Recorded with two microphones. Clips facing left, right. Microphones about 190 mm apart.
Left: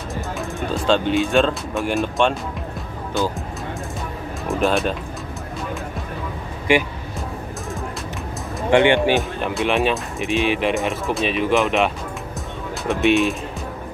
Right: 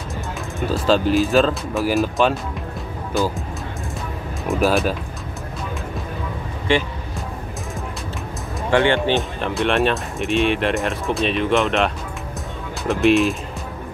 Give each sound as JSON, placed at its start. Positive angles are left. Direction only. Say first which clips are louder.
{"t": 0.1, "sound": "speech", "louder": "left 3 dB", "side_deg": 0}
{"t": 4.5, "sound": "speech", "louder": "right 1 dB", "side_deg": 0}
{"t": 6.7, "sound": "speech", "louder": "left 2 dB", "side_deg": 10}
{"t": 8.6, "sound": "speech", "louder": "left 2 dB", "side_deg": 20}
{"t": 9.4, "sound": "speech", "louder": "right 1 dB", "side_deg": 0}